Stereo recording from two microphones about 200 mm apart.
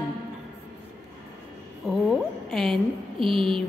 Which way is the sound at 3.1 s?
25° right (ahead or behind).